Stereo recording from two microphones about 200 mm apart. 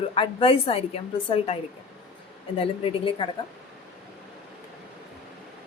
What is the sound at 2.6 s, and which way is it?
Speech, 25° left (ahead or behind).